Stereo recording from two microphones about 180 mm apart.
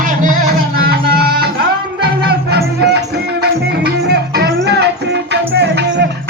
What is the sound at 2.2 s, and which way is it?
Music, 60° right (ahead or behind).